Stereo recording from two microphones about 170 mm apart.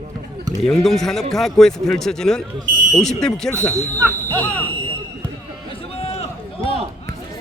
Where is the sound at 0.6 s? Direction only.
Centre (ahead or behind).